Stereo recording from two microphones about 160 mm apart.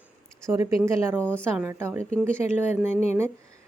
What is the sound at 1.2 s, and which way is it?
Speech, 10° left (ahead or behind).